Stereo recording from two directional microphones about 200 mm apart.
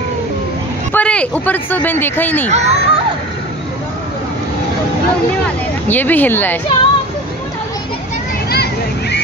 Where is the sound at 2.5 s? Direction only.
35° right (ahead or behind).